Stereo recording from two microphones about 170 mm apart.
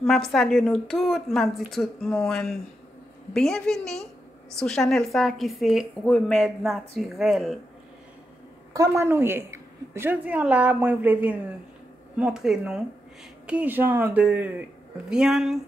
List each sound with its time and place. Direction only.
0.0 s a woman's voice: centre (ahead or behind)
8.7 s a woman's voice: 15° right (ahead or behind)